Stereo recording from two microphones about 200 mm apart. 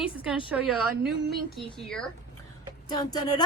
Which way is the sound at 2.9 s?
20° left (ahead or behind).